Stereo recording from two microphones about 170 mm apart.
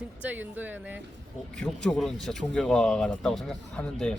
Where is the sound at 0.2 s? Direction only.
10° right (ahead or behind).